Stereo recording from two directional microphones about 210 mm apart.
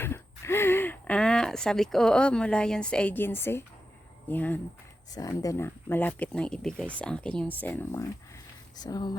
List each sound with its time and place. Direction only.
0.0 s speech: 10° left (ahead or behind)